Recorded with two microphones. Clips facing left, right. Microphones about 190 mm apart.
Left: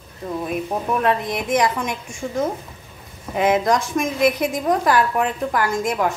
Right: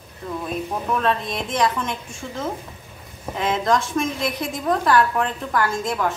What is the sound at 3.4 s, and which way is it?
A woman's voice, 15° left (ahead or behind).